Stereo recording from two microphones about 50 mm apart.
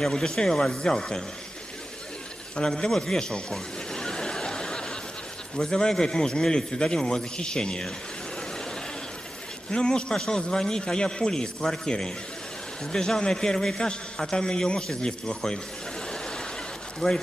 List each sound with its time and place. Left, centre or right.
0.0 s a man's voice: centre
2.5 s a man's voice: centre
3.5 s snicker: centre
5.6 s a man's voice: centre
9.7 s a man's voice: centre
16.1 s a sound: centre
17.0 s a man's voice: centre